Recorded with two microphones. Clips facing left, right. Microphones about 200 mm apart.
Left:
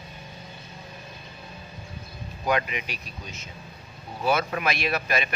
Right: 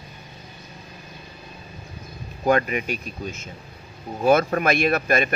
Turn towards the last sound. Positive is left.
turn(degrees=-50)  # may be behind; listen again after turning